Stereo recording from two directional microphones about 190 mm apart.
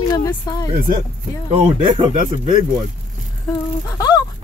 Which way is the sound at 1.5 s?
30° right (ahead or behind).